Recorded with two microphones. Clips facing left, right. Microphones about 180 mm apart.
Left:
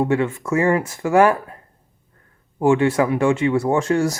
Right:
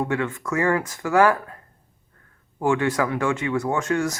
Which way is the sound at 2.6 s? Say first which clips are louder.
Left 5 dB; 20° left (ahead or behind).